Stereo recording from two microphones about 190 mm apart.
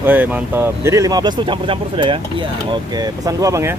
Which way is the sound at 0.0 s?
10° right (ahead or behind).